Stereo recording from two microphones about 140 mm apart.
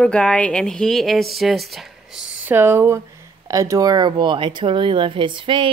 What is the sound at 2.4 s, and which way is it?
A woman's voice, 15° right (ahead or behind).